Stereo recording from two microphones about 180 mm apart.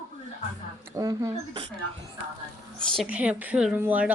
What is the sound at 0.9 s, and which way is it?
Speech, 20° right (ahead or behind).